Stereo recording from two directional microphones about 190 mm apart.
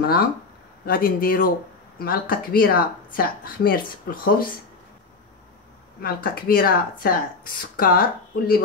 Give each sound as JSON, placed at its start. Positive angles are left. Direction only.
{"t": 0.0, "sound": "speech", "side_deg": 50}
{"t": 5.9, "sound": "speech", "side_deg": 50}